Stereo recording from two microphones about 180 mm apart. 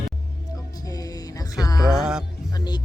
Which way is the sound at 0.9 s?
20° left (ahead or behind).